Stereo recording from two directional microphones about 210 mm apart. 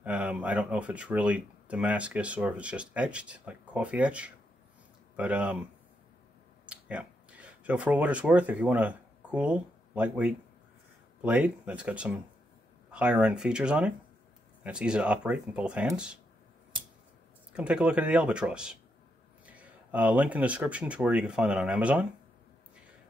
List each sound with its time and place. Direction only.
0.0 s speech: 5° right (ahead or behind)
6.7 s speech: 5° right (ahead or behind)
17.5 s speech: 5° right (ahead or behind)